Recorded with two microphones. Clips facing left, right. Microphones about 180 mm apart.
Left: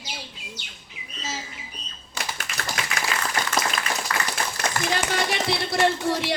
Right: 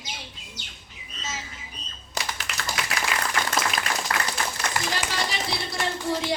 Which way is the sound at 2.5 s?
70° right (ahead or behind).